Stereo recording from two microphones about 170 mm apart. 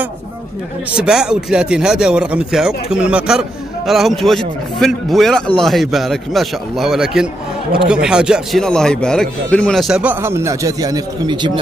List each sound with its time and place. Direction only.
0.9 s speech: 5° right (ahead or behind)
10.2 s a man's voice: 15° right (ahead or behind)